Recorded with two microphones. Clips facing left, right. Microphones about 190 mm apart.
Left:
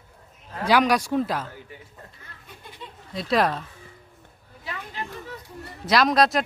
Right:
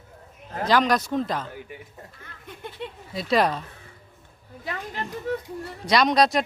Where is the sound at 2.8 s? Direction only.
65° right (ahead or behind).